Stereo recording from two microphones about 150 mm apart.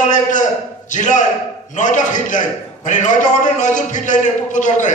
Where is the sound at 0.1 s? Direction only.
55° left (ahead or behind).